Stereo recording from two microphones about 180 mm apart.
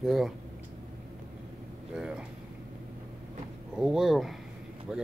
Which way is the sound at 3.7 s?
Centre (ahead or behind).